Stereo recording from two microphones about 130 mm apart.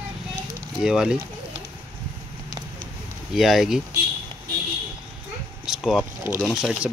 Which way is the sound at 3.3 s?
Centre (ahead or behind).